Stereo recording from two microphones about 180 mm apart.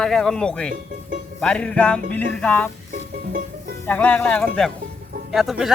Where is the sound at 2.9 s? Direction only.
50° right (ahead or behind).